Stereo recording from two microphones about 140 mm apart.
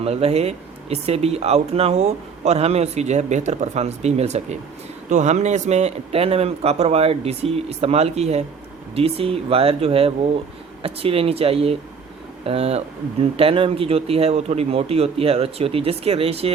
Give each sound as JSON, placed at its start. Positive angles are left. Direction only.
{"t": 0.0, "sound": "speech", "side_deg": -45}